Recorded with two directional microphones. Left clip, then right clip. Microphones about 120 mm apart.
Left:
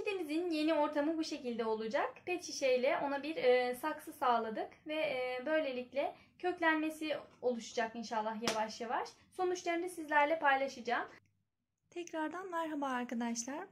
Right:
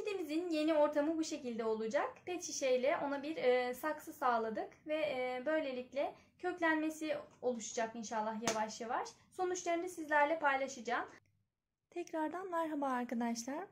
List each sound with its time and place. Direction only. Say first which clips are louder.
0.0 s a woman's voice: left 2 dB; 35° left (ahead or behind)
11.9 s a woman's voice: even; 10° right (ahead or behind)